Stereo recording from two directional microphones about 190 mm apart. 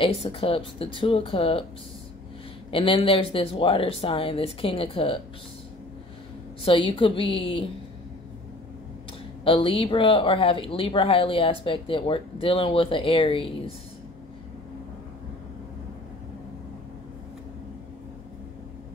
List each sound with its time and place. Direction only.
0.0 s speech: 30° left (ahead or behind)
2.7 s speech: 30° left (ahead or behind)
6.6 s speech: 30° left (ahead or behind)
9.4 s speech: 30° left (ahead or behind)